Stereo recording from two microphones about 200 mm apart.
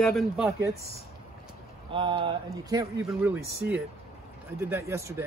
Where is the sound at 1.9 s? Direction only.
25° right (ahead or behind).